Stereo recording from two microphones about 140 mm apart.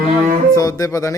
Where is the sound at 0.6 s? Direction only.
25° left (ahead or behind).